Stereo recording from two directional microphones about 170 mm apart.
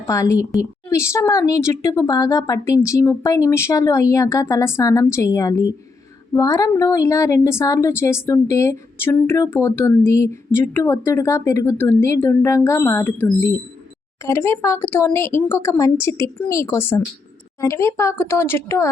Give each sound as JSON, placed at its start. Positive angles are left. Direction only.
{"t": 0.1, "sound": "a woman's voice", "side_deg": 20}
{"t": 14.3, "sound": "a woman's voice", "side_deg": 15}